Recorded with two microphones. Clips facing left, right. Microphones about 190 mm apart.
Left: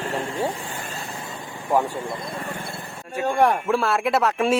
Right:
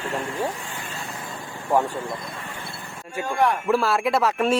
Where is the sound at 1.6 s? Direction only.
15° left (ahead or behind).